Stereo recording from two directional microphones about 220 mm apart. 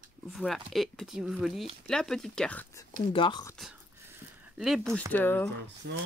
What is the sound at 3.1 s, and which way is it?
Speech, 20° left (ahead or behind).